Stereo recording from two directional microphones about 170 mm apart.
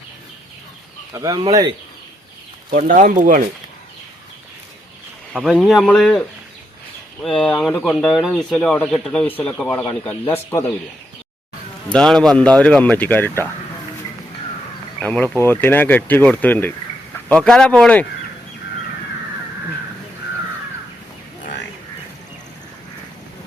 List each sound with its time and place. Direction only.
1.1 s speech: 20° right (ahead or behind)
2.7 s speech: 50° right (ahead or behind)
5.3 s speech: 5° right (ahead or behind); by 10.6 s 15° left (ahead or behind)
11.9 s speech: 5° left (ahead or behind)
15.0 s speech: 10° left (ahead or behind)